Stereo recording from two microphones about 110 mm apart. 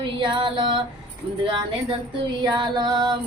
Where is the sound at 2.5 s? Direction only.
45° right (ahead or behind).